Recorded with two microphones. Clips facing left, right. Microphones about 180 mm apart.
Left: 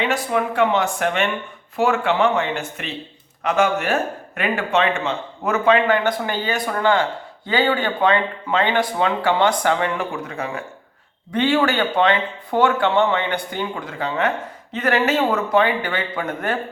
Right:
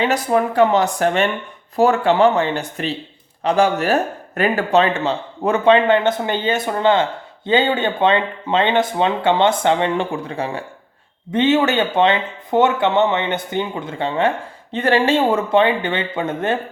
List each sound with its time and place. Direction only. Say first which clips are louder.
0.0 s speech: right 4 dB; 40° right (ahead or behind)